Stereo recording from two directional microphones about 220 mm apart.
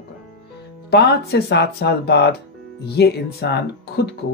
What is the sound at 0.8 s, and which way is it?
A man's voice, 45° left (ahead or behind).